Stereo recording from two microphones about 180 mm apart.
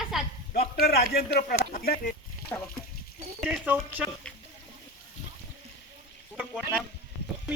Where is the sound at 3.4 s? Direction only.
5° right (ahead or behind).